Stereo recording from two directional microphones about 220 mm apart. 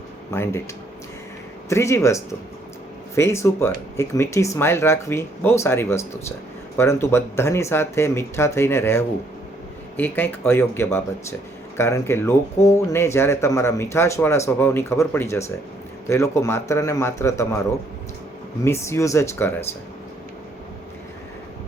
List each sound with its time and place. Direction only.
0.3 s speech: 10° left (ahead or behind)
1.7 s speech: 15° left (ahead or behind)
18.6 s speech: 10° left (ahead or behind)